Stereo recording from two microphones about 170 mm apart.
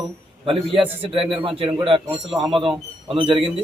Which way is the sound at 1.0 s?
30° right (ahead or behind).